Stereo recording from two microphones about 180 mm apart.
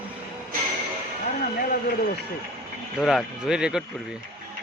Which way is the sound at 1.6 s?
55° left (ahead or behind).